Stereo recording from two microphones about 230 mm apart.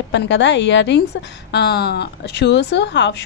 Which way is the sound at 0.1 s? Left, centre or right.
Left.